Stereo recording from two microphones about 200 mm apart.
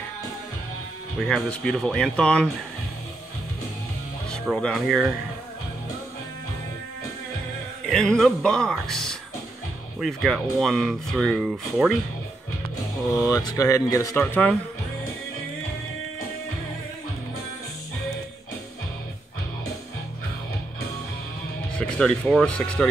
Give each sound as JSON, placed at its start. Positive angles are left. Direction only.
{"t": 1.2, "sound": "speech", "side_deg": 5}
{"t": 4.3, "sound": "speech", "side_deg": 5}
{"t": 7.9, "sound": "speech", "side_deg": 5}
{"t": 13.3, "sound": "speech", "side_deg": 20}
{"t": 21.7, "sound": "speech", "side_deg": 5}